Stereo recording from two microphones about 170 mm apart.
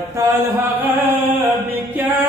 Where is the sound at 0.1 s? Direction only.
15° right (ahead or behind).